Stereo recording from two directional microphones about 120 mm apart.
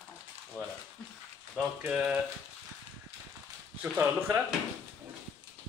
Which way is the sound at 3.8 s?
20° right (ahead or behind).